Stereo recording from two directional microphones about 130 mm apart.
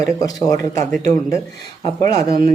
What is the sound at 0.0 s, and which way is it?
Speech, 30° left (ahead or behind).